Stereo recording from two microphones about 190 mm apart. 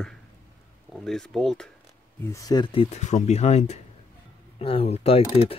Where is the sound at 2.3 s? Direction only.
20° left (ahead or behind).